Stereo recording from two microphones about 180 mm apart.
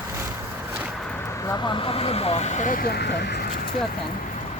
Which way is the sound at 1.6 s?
30° left (ahead or behind).